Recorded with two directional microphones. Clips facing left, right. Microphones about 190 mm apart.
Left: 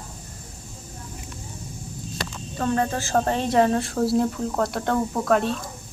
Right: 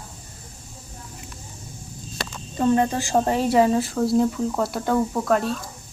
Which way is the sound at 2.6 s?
15° right (ahead or behind).